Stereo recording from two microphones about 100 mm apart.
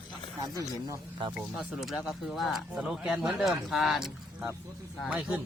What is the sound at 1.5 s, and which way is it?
Speech, centre (ahead or behind).